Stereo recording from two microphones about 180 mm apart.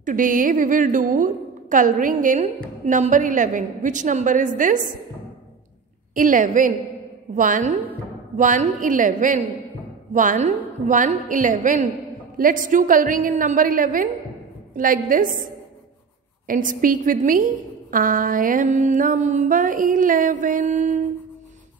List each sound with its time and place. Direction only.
0.0 s music: 45° right (ahead or behind)
6.1 s music: 45° right (ahead or behind)